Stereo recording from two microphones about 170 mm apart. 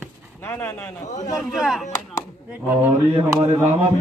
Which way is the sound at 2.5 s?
10° right (ahead or behind).